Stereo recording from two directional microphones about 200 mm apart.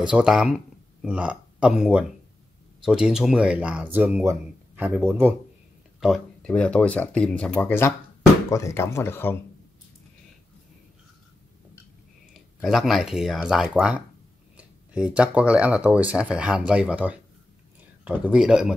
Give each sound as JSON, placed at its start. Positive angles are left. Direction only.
{"t": 0.1, "sound": "speech", "side_deg": -5}
{"t": 12.6, "sound": "speech", "side_deg": 0}